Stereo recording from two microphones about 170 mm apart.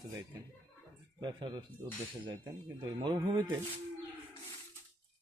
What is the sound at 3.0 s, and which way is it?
Speech, 25° right (ahead or behind).